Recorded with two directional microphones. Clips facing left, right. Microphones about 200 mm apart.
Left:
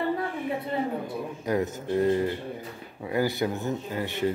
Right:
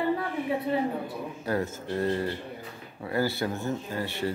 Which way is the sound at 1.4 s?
15° left (ahead or behind).